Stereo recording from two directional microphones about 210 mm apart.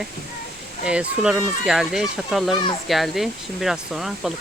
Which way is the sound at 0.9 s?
5° right (ahead or behind).